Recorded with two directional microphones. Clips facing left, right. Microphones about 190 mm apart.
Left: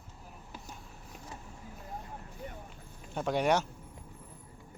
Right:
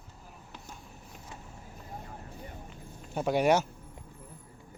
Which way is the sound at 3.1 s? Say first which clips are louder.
Right 3 dB; 10° right (ahead or behind).